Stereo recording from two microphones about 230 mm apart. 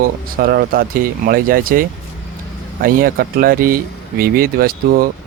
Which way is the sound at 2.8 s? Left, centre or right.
Right.